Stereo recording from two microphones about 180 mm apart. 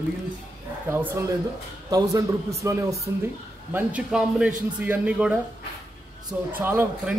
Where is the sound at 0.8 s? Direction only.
10° right (ahead or behind).